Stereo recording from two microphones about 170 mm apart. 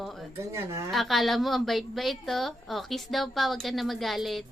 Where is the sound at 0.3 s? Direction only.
15° right (ahead or behind).